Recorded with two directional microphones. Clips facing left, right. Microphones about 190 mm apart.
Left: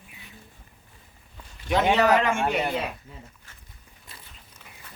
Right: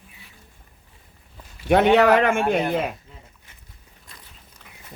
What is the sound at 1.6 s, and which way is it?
Speech, 65° right (ahead or behind).